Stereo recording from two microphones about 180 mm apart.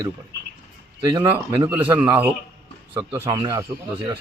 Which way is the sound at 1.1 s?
20° right (ahead or behind).